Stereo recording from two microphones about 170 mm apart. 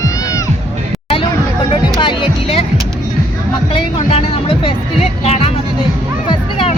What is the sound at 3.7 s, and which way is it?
Music, 30° left (ahead or behind).